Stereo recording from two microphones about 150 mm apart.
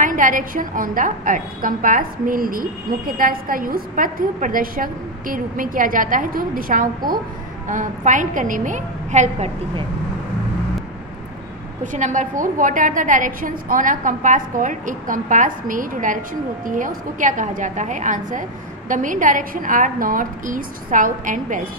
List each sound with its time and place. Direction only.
0.0 s a woman's voice: 60° right (ahead or behind)
11.8 s a woman's voice: 55° right (ahead or behind)